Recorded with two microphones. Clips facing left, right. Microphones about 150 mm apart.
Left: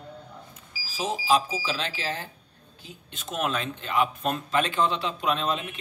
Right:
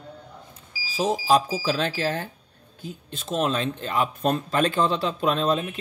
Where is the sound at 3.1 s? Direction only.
30° right (ahead or behind).